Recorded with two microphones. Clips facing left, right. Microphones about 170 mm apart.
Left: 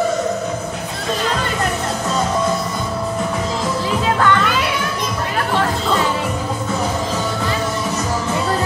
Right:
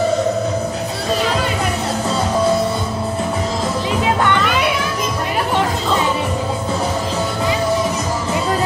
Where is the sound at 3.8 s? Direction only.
20° right (ahead or behind).